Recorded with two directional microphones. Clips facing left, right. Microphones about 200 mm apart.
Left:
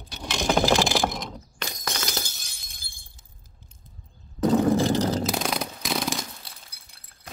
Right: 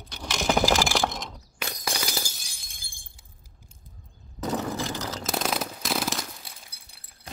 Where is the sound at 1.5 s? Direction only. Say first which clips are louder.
Right 2 dB; 10° right (ahead or behind).